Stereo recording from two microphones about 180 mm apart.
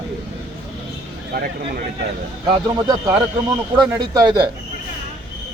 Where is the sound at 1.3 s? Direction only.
55° right (ahead or behind).